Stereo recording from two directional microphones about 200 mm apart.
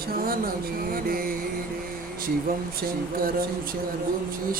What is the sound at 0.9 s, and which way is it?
Speech, 45° right (ahead or behind).